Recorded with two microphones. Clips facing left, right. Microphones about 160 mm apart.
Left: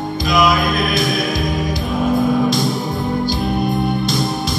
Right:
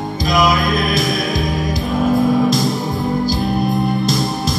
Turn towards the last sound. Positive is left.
turn(degrees=0)  # may be behind; listen again after turning